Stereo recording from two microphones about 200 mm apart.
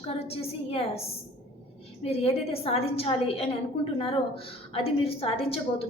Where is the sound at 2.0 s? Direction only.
30° left (ahead or behind).